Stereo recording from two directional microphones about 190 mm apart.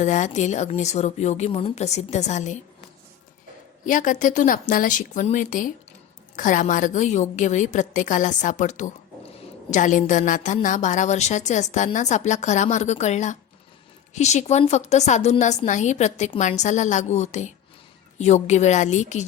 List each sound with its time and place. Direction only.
0.0 s a woman's voice: 40° left (ahead or behind)
3.8 s a woman's voice: 45° left (ahead or behind)